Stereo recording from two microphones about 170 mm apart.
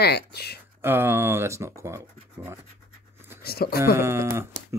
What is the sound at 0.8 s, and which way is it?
Speech, 15° right (ahead or behind).